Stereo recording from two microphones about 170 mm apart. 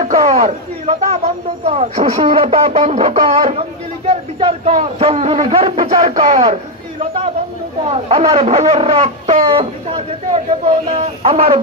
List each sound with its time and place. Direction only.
0.0 s speech: 35° right (ahead or behind)
7.8 s speech: 35° right (ahead or behind)